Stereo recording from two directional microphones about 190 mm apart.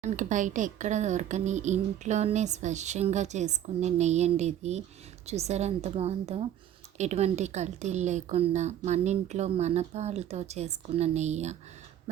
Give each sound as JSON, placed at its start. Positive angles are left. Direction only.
{"t": 0.0, "sound": "a woman's voice", "side_deg": -40}